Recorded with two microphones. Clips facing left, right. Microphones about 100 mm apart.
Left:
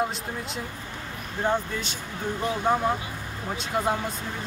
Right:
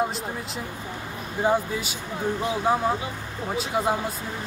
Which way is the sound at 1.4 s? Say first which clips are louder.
Right 3 dB; 5° right (ahead or behind).